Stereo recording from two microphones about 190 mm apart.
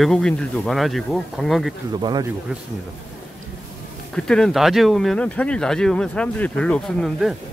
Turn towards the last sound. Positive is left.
turn(degrees=0)  # may be behind; listen again after turning